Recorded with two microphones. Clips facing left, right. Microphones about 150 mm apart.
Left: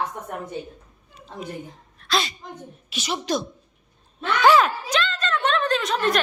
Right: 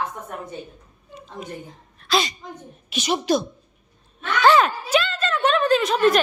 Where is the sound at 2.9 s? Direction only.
15° right (ahead or behind).